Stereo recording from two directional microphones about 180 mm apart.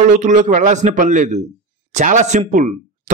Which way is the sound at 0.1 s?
45° right (ahead or behind).